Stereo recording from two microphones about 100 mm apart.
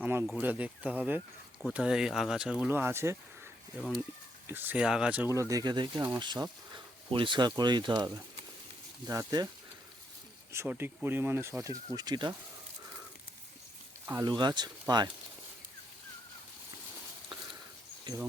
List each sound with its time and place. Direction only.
0.0 s speech: 20° right (ahead or behind)
2.6 s speech: 20° right (ahead or behind)
3.8 s speech: centre (ahead or behind)
4.4 s speech: 20° right (ahead or behind)
4.8 s speech: 5° right (ahead or behind)
5.3 s speech: 35° right (ahead or behind)
10.7 s speech: 20° right (ahead or behind); by 12.3 s 45° right (ahead or behind)
14.2 s speech: 45° right (ahead or behind)